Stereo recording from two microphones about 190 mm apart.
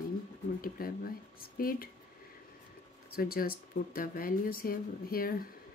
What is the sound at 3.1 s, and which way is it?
Speech, 50° left (ahead or behind).